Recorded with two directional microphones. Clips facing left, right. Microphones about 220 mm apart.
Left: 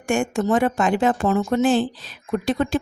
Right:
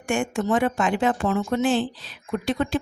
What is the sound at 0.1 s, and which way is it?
Speech, 40° left (ahead or behind).